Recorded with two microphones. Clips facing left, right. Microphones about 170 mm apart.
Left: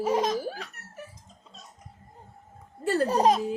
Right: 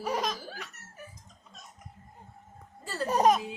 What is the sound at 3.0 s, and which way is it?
Speech, 30° left (ahead or behind).